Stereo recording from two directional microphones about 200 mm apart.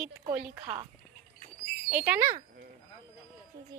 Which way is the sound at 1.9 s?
5° right (ahead or behind).